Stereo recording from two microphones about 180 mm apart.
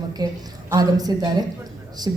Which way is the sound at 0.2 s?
20° right (ahead or behind).